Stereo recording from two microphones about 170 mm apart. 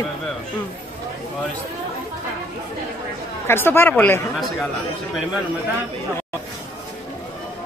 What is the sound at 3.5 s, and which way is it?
Speech, 15° left (ahead or behind).